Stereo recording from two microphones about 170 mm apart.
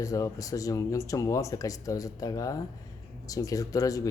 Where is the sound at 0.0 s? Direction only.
20° left (ahead or behind).